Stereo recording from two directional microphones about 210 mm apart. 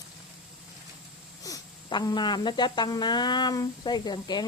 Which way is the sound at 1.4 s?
15° left (ahead or behind).